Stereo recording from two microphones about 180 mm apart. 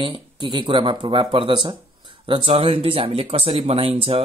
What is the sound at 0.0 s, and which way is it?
Speech, 25° right (ahead or behind).